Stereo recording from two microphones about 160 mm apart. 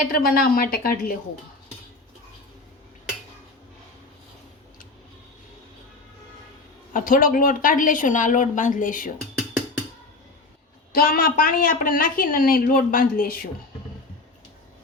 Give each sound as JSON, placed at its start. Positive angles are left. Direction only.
{"t": 0.1, "sound": "a woman's voice", "side_deg": 65}
{"t": 6.9, "sound": "a woman's voice", "side_deg": 60}
{"t": 10.9, "sound": "a woman's voice", "side_deg": 65}